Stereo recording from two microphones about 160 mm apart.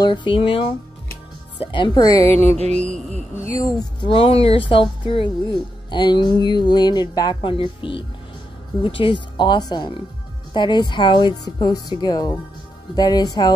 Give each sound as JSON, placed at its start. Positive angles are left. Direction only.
{"t": 0.0, "sound": "speech", "side_deg": 30}
{"t": 2.8, "sound": "speech", "side_deg": -50}
{"t": 3.8, "sound": "speech", "side_deg": 30}